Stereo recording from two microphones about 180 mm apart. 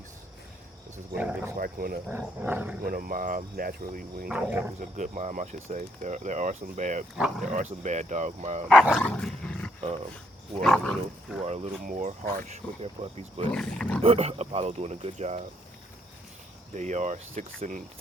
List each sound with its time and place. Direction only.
1.2 s speech: 10° right (ahead or behind)
1.5 s speech: 55° right (ahead or behind)
2.0 s speech: 10° right (ahead or behind)
2.8 s speech: 55° right (ahead or behind)
4.3 s speech: 10° right (ahead or behind)
4.8 s speech: 45° right (ahead or behind)
8.7 s speech: centre (ahead or behind)
9.0 s dog: 5° left (ahead or behind)
10.6 s speech: centre (ahead or behind)
11.4 s speech: 35° right (ahead or behind)
13.5 s speech: 5° left (ahead or behind)
14.0 s speech: 35° right (ahead or behind)
16.7 s speech: 40° right (ahead or behind)